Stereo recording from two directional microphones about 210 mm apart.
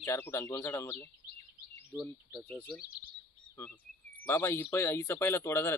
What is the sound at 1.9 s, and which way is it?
Speech, 5° right (ahead or behind).